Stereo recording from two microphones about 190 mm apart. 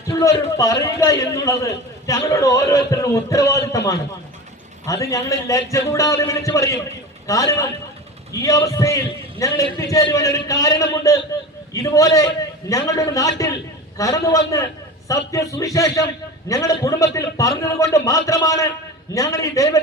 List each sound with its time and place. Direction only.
0.1 s a man's voice: 15° left (ahead or behind)